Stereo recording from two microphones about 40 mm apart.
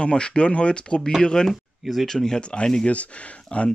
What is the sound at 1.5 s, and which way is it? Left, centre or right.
Speech, centre.